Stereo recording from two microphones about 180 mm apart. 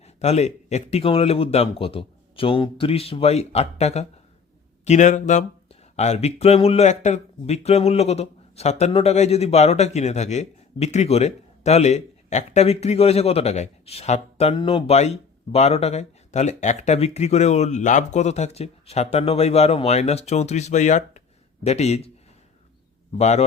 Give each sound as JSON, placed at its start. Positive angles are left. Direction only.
{"t": 0.0, "sound": "speech", "side_deg": 35}
{"t": 23.1, "sound": "speech", "side_deg": 40}